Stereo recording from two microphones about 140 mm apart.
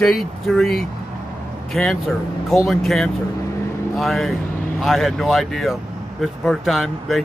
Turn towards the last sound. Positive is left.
turn(degrees=0)  # may be behind; listen again after turning